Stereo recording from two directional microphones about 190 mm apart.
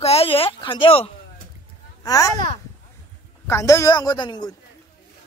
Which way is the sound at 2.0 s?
20° left (ahead or behind).